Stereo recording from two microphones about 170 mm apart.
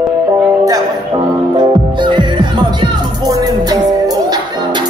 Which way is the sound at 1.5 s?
25° right (ahead or behind).